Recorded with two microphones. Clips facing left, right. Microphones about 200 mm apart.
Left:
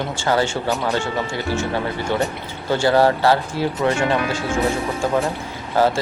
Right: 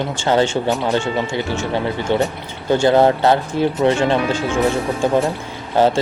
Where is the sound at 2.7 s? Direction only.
20° right (ahead or behind).